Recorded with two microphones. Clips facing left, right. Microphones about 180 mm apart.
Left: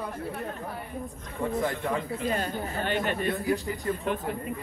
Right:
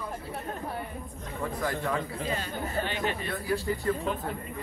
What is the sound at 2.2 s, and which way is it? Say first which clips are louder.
Speech: left 3 dB; 50° left (ahead or behind).